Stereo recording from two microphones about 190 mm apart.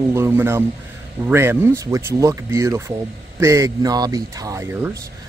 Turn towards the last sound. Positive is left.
turn(degrees=-15)  # may be behind; listen again after turning